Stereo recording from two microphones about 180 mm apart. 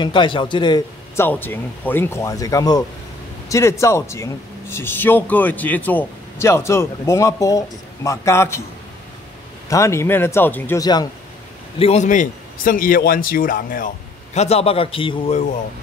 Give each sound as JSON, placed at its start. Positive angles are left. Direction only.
{"t": 0.0, "sound": "a man's voice", "side_deg": 25}
{"t": 1.2, "sound": "speech", "side_deg": 10}
{"t": 9.7, "sound": "speech", "side_deg": 15}
{"t": 11.8, "sound": "a man's voice", "side_deg": 40}